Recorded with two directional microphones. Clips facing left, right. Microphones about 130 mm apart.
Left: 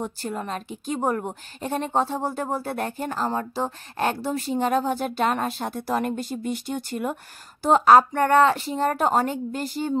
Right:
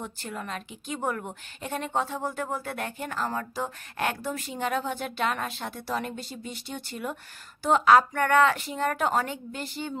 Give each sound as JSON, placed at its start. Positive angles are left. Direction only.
{"t": 0.0, "sound": "a woman's voice", "side_deg": 35}
{"t": 7.6, "sound": "a woman's voice", "side_deg": 35}